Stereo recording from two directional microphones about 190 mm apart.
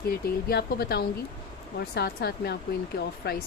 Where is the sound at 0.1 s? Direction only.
55° left (ahead or behind).